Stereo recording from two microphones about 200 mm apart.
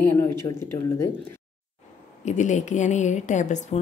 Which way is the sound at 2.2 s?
35° left (ahead or behind).